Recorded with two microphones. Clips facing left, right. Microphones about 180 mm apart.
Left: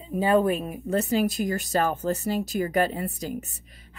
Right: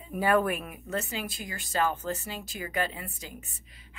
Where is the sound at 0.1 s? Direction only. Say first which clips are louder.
Left 4 dB; 25° left (ahead or behind).